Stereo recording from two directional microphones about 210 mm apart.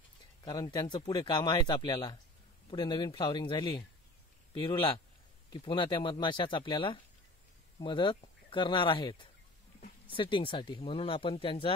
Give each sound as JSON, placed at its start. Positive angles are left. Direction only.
{"t": 0.5, "sound": "speech", "side_deg": 20}